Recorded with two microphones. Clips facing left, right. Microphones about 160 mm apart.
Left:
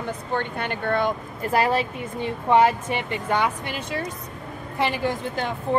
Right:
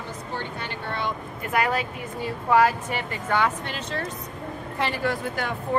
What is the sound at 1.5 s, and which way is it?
Speech, 30° left (ahead or behind).